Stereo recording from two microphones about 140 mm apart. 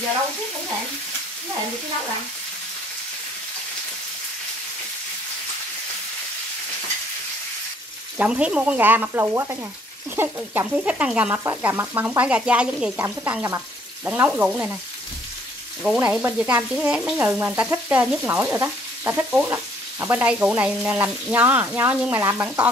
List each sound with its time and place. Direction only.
8.2 s frying: 10° right (ahead or behind)
16.0 s frying: 15° right (ahead or behind)